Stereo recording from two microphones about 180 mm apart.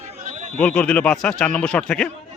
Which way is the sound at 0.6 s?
5° left (ahead or behind).